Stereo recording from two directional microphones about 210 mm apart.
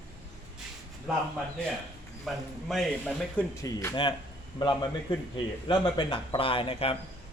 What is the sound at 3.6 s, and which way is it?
A man's voice, 15° left (ahead or behind).